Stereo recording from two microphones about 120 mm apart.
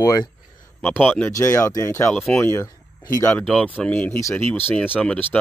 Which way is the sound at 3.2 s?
10° left (ahead or behind).